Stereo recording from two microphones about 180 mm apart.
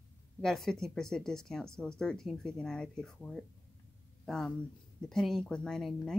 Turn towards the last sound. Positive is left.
turn(degrees=0)  # may be behind; listen again after turning